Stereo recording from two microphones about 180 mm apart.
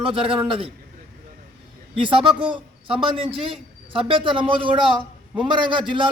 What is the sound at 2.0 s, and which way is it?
A man's voice, 30° right (ahead or behind).